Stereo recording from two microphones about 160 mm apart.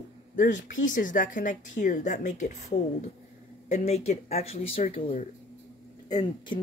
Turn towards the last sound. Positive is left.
turn(degrees=25)  # may be behind; listen again after turning